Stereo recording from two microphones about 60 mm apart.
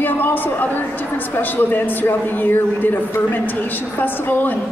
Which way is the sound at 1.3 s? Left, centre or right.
Left.